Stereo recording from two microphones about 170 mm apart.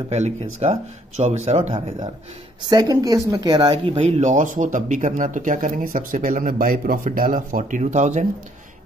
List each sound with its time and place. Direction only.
0.1 s speech: 40° right (ahead or behind)
2.6 s speech: 25° right (ahead or behind); by 8.3 s 45° right (ahead or behind)